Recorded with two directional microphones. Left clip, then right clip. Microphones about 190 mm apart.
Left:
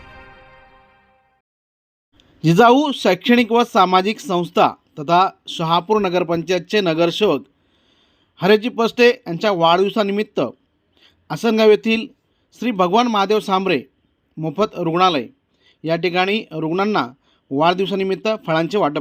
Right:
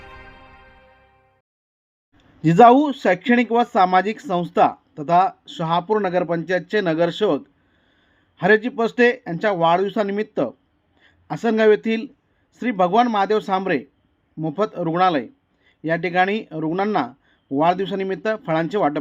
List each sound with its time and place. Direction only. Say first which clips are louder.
0.0 s music: even; centre (ahead or behind)
2.7 s speech: left 1 dB; 30° left (ahead or behind)